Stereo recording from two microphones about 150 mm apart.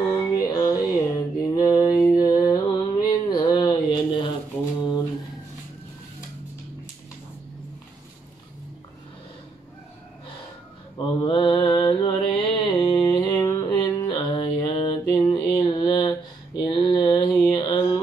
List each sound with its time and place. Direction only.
0.1 s mantra: 25° left (ahead or behind)
11.0 s mantra: 30° left (ahead or behind)